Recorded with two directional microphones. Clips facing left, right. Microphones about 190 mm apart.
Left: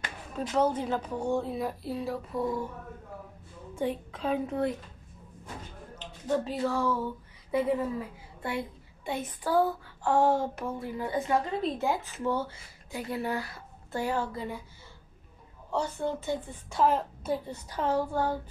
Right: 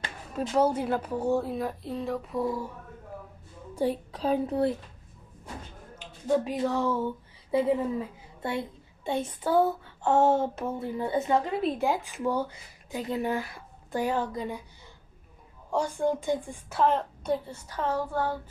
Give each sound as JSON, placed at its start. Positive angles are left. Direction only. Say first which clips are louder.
{"t": 0.6, "sound": "speech", "louder": "right 2 dB", "side_deg": -10}
{"t": 3.7, "sound": "a child's voice", "louder": "right 3 dB", "side_deg": -35}
{"t": 5.9, "sound": "a woman's voice", "louder": "right 3 dB", "side_deg": -10}
{"t": 15.7, "sound": "speech", "louder": "right 4 dB", "side_deg": -10}
{"t": 16.8, "sound": "a woman's voice", "louder": "right 1 dB", "side_deg": 5}